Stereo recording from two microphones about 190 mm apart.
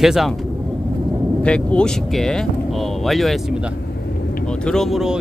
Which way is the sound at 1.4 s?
5° left (ahead or behind).